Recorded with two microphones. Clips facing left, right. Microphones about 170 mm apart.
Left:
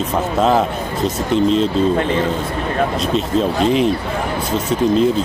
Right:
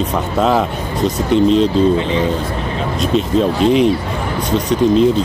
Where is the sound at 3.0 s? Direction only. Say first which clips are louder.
Right 3 dB; centre (ahead or behind).